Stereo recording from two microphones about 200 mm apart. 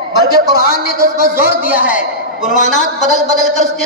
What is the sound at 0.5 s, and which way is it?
A man's voice, 50° left (ahead or behind).